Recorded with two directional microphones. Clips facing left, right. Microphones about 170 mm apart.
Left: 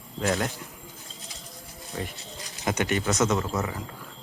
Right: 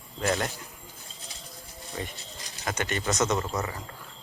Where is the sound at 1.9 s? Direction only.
Centre (ahead or behind).